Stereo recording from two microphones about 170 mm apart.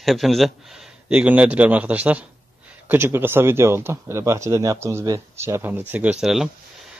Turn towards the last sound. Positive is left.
turn(degrees=-5)  # may be behind; listen again after turning